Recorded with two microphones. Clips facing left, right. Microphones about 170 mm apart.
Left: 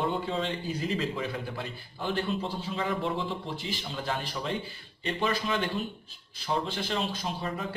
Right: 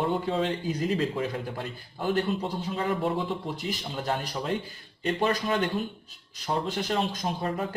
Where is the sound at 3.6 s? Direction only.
45° right (ahead or behind).